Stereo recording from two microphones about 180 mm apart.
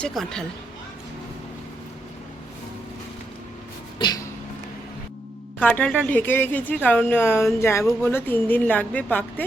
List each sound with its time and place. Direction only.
0.0 s speech: centre (ahead or behind)
3.9 s a sound: 25° left (ahead or behind)
5.5 s a woman's voice: 5° left (ahead or behind)